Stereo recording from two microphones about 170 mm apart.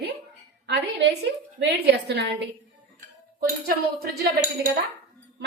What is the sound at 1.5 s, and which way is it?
Speech, 80° right.